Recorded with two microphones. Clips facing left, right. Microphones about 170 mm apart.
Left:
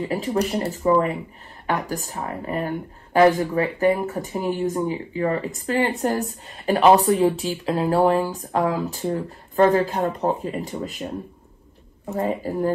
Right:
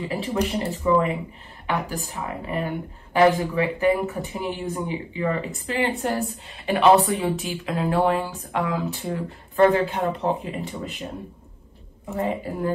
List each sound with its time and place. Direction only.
0.0 s a woman's voice: 40° left (ahead or behind)
12.1 s a woman's voice: 35° left (ahead or behind)